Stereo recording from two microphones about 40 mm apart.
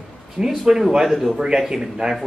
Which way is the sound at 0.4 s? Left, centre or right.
Centre.